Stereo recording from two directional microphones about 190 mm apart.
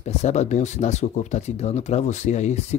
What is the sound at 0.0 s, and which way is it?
Speech, 35° left (ahead or behind).